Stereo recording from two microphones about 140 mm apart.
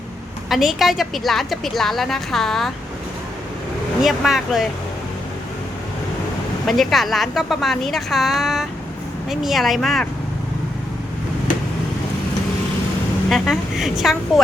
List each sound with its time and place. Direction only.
0.5 s a woman's voice: centre (ahead or behind)
4.0 s a woman's voice: centre (ahead or behind)
6.7 s a woman's voice: centre (ahead or behind)
13.3 s a woman's voice: centre (ahead or behind)